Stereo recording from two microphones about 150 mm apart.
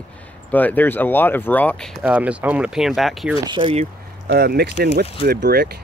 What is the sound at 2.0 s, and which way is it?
Speech, 10° right (ahead or behind).